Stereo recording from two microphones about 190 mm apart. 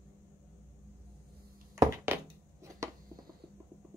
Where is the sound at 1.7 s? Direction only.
15° right (ahead or behind).